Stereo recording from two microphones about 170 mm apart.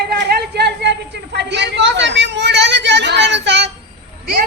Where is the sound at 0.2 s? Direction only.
70° right (ahead or behind); by 3.7 s 90° right.